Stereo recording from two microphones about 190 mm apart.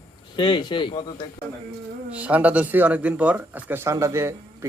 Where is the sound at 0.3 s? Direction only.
25° left (ahead or behind).